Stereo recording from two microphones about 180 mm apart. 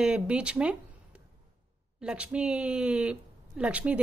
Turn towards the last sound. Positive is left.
turn(degrees=-5)  # may be behind; listen again after turning